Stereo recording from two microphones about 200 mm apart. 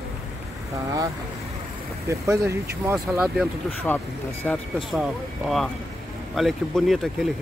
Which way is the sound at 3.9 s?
10° left (ahead or behind).